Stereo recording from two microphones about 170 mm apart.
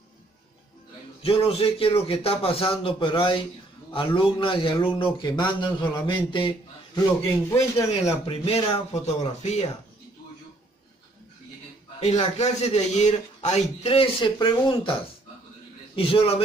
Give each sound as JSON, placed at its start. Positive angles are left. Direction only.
{"t": 1.2, "sound": "speech", "side_deg": 35}
{"t": 7.5, "sound": "a man's voice", "side_deg": 15}
{"t": 8.3, "sound": "speech", "side_deg": 35}
{"t": 12.0, "sound": "speech", "side_deg": 40}
{"t": 16.0, "sound": "speech", "side_deg": 35}